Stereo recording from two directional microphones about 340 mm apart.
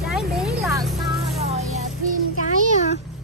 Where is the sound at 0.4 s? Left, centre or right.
Centre.